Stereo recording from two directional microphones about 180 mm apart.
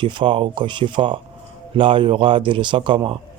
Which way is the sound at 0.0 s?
25° right (ahead or behind).